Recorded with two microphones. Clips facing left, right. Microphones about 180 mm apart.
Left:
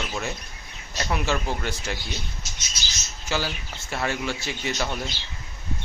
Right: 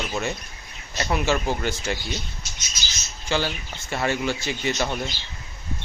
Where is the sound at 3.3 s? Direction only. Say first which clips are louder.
Right 3 dB; 5° left (ahead or behind).